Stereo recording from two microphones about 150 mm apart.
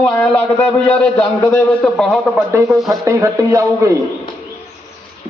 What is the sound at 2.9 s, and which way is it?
A man's voice, 20° right (ahead or behind).